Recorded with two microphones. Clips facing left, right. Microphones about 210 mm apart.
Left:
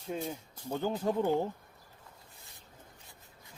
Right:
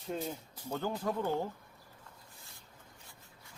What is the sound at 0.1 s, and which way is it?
Speech, 10° left (ahead or behind).